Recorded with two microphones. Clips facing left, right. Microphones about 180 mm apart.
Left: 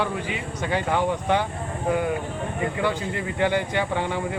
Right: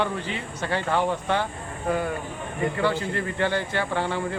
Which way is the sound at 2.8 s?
15° left (ahead or behind).